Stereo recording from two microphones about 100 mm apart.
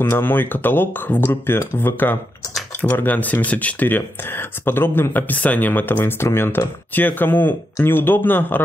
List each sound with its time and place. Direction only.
0.0 s speech: 20° left (ahead or behind)